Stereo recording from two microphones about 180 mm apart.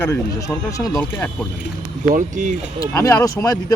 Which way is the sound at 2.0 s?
45° right (ahead or behind).